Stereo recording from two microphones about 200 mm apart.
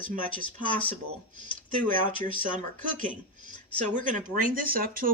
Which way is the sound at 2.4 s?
40° right (ahead or behind).